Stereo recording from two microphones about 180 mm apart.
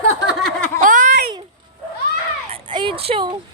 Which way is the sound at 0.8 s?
45° right (ahead or behind).